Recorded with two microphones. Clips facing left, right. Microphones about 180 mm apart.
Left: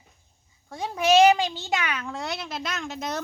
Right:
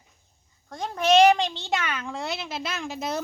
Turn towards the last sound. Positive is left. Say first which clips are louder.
# right 1 dB
turn(degrees=-10)  # may be behind; listen again after turning